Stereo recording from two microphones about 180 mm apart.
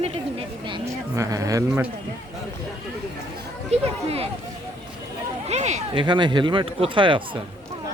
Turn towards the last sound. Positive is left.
turn(degrees=-30)  # may be behind; listen again after turning